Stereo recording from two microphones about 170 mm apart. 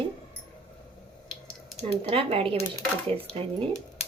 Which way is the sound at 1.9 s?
30° right (ahead or behind).